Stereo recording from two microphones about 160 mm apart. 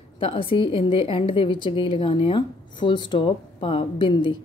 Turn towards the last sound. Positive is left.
turn(degrees=30)  # may be behind; listen again after turning